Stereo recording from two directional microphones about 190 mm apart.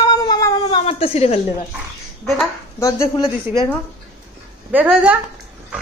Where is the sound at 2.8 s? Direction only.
15° left (ahead or behind).